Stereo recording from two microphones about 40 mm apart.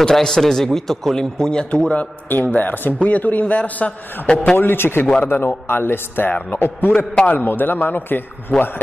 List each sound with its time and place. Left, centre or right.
0.0 s a man's voice: centre
2.2 s a man's voice: left
3.0 s a man's voice: left
4.6 s a man's voice: left